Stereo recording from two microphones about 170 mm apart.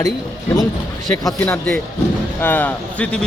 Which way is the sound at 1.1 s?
15° left (ahead or behind).